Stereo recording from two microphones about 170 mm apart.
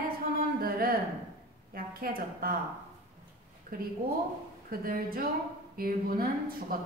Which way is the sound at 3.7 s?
55° right (ahead or behind).